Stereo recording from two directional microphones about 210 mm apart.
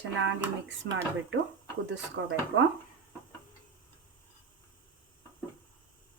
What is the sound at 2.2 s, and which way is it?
Speech, 55° right (ahead or behind).